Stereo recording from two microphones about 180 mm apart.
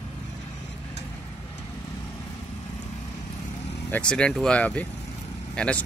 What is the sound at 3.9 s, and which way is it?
Speech, 5° left (ahead or behind).